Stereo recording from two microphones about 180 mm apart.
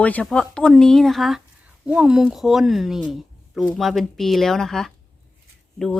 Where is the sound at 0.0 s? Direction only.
10° left (ahead or behind).